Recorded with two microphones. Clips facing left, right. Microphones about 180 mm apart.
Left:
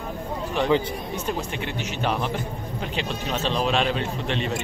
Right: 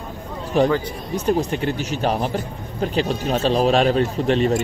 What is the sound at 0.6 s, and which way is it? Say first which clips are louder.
Speech: right 4 dB; 40° right (ahead or behind).